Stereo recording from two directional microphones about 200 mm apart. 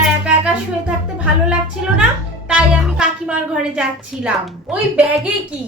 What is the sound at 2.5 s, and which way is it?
A child's voice, 5° right (ahead or behind).